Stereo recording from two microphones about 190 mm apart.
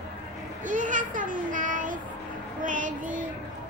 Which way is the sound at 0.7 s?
45° right (ahead or behind).